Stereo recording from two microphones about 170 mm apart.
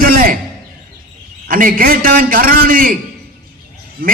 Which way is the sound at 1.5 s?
55° right (ahead or behind).